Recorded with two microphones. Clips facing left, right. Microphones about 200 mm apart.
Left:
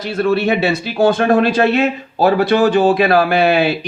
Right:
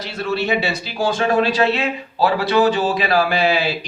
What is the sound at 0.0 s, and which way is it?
Speech, 55° left (ahead or behind).